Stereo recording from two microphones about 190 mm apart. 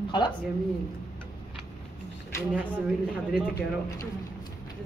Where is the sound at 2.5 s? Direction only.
5° right (ahead or behind).